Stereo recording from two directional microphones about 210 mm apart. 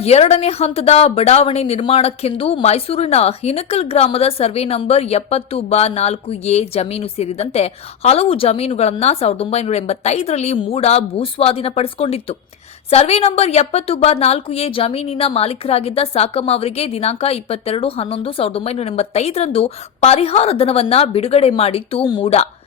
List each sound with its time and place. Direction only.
0.0 s a woman's voice: 30° left (ahead or behind)